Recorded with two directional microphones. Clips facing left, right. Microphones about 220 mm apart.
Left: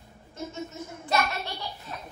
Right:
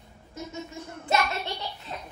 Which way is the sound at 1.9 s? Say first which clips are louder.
Right 2 dB; 20° right (ahead or behind).